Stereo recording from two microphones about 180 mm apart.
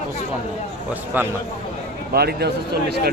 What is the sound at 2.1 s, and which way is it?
A man's voice, 60° right (ahead or behind).